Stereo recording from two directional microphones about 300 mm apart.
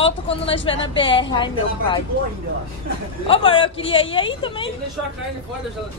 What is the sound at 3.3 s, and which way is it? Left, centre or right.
A woman's voice, centre.